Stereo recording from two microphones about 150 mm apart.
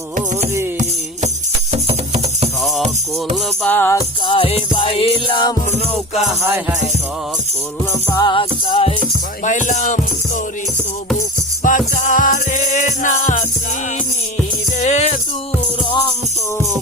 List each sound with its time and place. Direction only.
1.7 s music: 45° right (ahead or behind)
3.3 s music: 10° left (ahead or behind)
4.3 s music: 40° left (ahead or behind)
8.2 s music: 35° left (ahead or behind)
9.4 s music: 55° left (ahead or behind)
11.6 s music: 60° left (ahead or behind)
14.8 s music: 50° left (ahead or behind)
15.9 s music: 35° left (ahead or behind)